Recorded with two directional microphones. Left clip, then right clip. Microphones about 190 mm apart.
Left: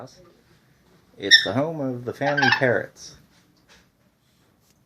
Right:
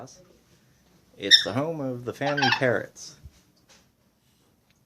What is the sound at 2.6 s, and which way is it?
Speech, 5° left (ahead or behind).